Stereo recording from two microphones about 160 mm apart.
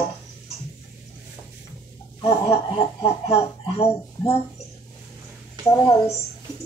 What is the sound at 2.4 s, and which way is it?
Speech, 30° left (ahead or behind).